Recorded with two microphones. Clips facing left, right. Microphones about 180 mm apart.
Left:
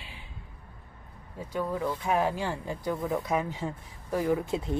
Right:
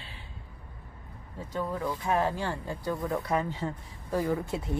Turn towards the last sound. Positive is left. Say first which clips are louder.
# left 2 dB
turn(degrees=20)  # may be behind; listen again after turning